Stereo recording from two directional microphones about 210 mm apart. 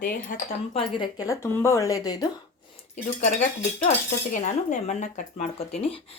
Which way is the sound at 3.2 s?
35° left (ahead or behind).